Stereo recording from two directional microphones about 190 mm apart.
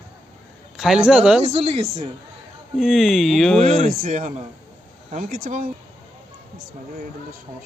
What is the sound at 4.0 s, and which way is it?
Speech, 40° right (ahead or behind).